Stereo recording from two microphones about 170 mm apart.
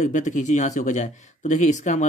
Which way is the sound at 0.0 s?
45° left (ahead or behind).